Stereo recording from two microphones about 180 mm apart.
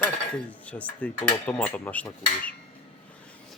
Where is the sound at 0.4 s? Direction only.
5° left (ahead or behind).